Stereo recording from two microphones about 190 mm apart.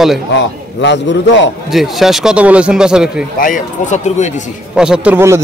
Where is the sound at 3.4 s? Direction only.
40° left (ahead or behind).